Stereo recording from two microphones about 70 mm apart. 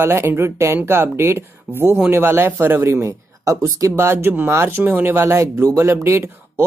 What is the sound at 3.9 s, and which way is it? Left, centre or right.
Speech, right.